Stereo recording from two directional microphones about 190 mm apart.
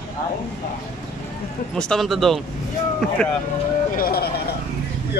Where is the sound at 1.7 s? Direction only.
5° left (ahead or behind).